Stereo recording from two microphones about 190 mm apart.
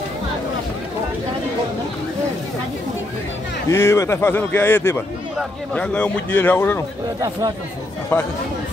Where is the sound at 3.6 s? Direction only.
15° left (ahead or behind).